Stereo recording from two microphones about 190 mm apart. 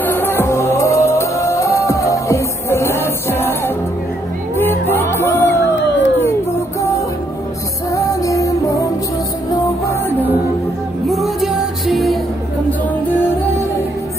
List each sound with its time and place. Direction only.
0.0 s music: 10° left (ahead or behind)
5.8 s a sound: 70° left (ahead or behind)
7.9 s music: 15° left (ahead or behind)
11.1 s music: centre (ahead or behind)